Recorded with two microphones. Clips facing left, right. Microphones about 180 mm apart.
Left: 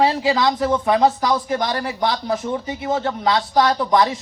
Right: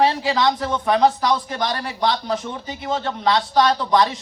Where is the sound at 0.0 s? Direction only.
25° left (ahead or behind).